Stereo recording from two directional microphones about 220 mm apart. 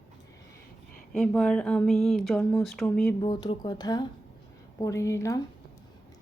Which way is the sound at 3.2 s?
20° left (ahead or behind).